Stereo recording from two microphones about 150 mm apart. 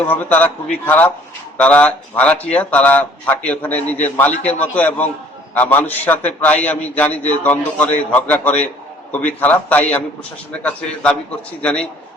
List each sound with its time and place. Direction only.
0.0 s speech: 10° left (ahead or behind)